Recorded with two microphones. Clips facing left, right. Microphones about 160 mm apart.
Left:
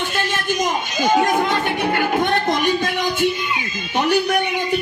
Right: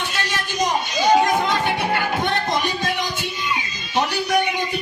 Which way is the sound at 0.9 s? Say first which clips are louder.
Even; 50° left (ahead or behind).